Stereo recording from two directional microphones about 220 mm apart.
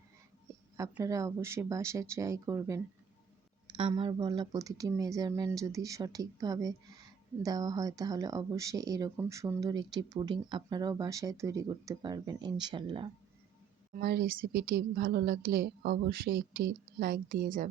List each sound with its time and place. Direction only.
0.8 s speech: 15° right (ahead or behind)
13.9 s a woman's voice: 45° right (ahead or behind)